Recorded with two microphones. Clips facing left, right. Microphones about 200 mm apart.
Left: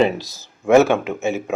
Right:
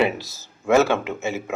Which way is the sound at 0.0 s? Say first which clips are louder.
Left 4 dB; 15° left (ahead or behind).